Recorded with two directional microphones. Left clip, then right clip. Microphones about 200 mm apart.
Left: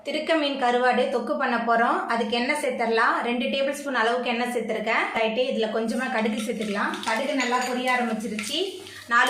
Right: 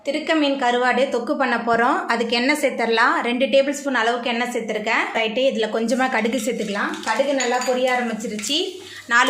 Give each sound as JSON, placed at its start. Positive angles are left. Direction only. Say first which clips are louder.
{"t": 0.1, "sound": "a woman's voice", "louder": "right 4 dB", "side_deg": -30}
{"t": 9.1, "sound": "a child's voice", "louder": "right 3 dB", "side_deg": -45}